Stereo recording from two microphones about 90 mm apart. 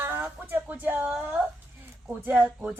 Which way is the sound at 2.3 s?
20° right (ahead or behind).